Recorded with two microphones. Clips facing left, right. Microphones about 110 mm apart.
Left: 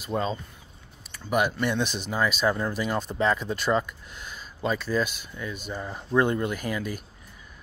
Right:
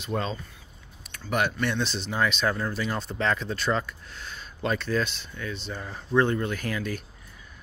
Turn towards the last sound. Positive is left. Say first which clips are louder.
# even
turn(degrees=10)  # may be behind; listen again after turning